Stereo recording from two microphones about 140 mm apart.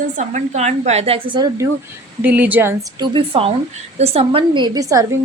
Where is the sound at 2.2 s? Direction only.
10° right (ahead or behind).